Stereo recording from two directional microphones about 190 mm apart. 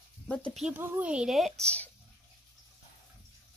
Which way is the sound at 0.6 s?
10° right (ahead or behind).